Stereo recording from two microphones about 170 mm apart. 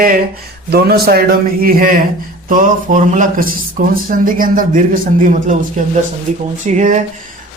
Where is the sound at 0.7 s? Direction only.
70° right (ahead or behind).